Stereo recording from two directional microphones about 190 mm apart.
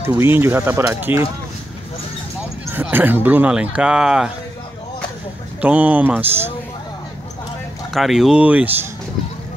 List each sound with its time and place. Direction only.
0.0 s speech: 10° right (ahead or behind)
2.7 s speech: 10° right (ahead or behind)
5.6 s speech: 10° right (ahead or behind)
7.9 s speech: centre (ahead or behind)